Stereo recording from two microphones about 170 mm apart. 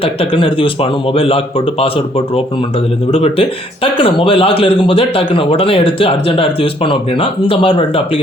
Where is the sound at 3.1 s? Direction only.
35° left (ahead or behind).